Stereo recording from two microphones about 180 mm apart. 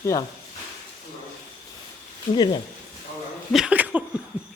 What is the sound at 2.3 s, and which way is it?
Speech, 25° left (ahead or behind).